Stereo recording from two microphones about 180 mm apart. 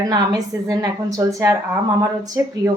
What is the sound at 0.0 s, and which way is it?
A woman's voice, 20° right (ahead or behind).